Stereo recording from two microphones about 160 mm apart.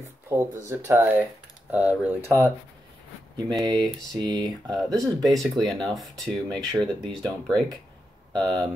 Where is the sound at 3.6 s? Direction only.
25° right (ahead or behind).